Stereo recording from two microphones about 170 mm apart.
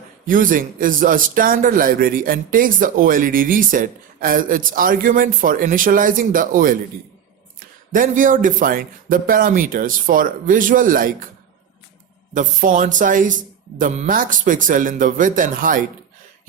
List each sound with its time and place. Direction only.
0.3 s a man's voice: 55° right (ahead or behind)
7.9 s a man's voice: 50° right (ahead or behind)
12.3 s a man's voice: 50° right (ahead or behind)